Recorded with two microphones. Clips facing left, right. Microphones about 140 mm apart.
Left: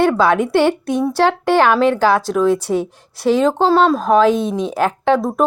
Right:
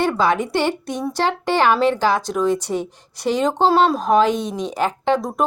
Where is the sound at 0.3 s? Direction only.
55° left (ahead or behind).